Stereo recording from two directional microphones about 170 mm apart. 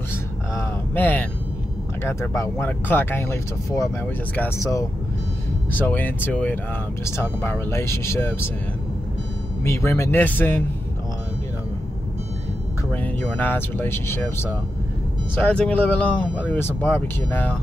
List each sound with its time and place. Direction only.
0.9 s speech: 10° left (ahead or behind)
9.6 s speech: 15° left (ahead or behind)
12.9 s speech: 10° left (ahead or behind)